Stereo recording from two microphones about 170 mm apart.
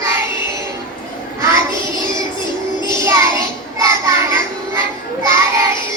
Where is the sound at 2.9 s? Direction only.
20° right (ahead or behind).